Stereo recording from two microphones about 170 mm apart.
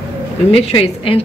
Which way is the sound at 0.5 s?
35° left (ahead or behind).